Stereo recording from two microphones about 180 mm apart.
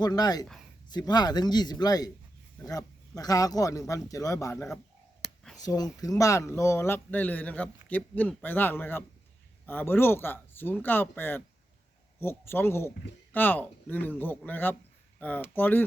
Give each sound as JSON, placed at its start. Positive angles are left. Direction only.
{"t": 0.0, "sound": "speech", "side_deg": 20}
{"t": 4.5, "sound": "speech", "side_deg": 5}
{"t": 5.2, "sound": "a sound", "side_deg": 0}
{"t": 5.5, "sound": "speech", "side_deg": 20}